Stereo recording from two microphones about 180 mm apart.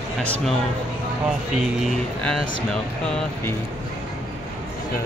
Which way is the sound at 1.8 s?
Centre (ahead or behind).